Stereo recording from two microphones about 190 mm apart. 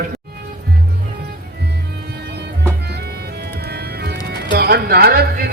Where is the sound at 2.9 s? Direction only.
60° right (ahead or behind).